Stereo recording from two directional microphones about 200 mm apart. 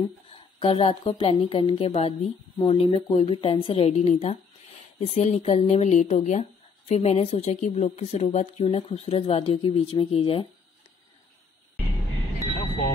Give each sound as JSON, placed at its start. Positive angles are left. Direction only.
{"t": 0.0, "sound": "a woman's voice", "side_deg": 25}